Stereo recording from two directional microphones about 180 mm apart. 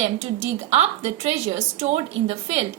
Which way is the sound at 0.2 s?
35° right (ahead or behind).